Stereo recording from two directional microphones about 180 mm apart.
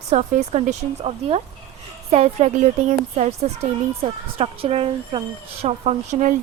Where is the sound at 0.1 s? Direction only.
35° right (ahead or behind).